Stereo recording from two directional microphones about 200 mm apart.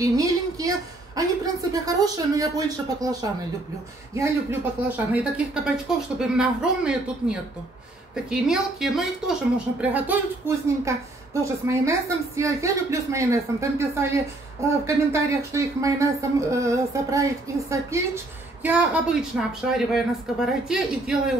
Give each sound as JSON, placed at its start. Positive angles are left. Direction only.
{"t": 0.0, "sound": "speech", "side_deg": -15}